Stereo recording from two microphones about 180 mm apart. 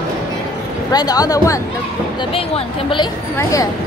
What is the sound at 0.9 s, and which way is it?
Speech, 20° left (ahead or behind).